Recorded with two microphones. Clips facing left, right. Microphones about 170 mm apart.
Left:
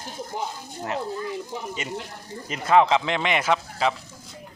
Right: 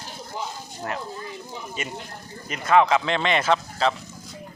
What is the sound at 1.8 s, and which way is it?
Speech, 20° left (ahead or behind).